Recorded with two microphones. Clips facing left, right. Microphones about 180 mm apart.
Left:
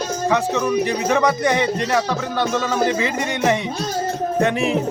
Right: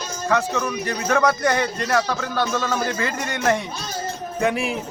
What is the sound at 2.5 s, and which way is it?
Speech, 20° left (ahead or behind).